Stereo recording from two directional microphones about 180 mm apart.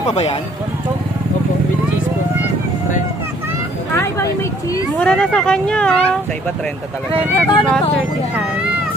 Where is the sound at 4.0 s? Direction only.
15° left (ahead or behind).